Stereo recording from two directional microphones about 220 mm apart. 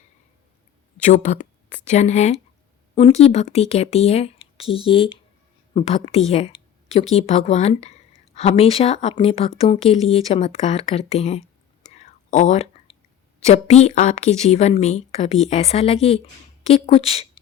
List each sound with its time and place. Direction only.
1.0 s speech: 35° left (ahead or behind)
11.9 s whispering: 30° left (ahead or behind)
13.4 s speech: 30° left (ahead or behind)